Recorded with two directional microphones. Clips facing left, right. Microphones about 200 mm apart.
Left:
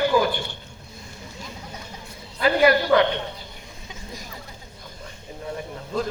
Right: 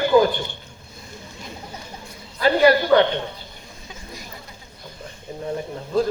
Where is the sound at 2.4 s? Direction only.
30° right (ahead or behind).